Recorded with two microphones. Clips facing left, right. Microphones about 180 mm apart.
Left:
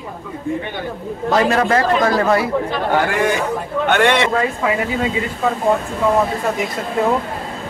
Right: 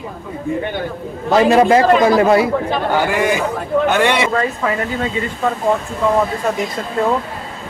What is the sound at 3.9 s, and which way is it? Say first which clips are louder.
Speech: left 3 dB; 5° right (ahead or behind).